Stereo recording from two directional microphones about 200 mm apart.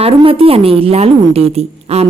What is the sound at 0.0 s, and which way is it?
A woman's voice, 30° right (ahead or behind).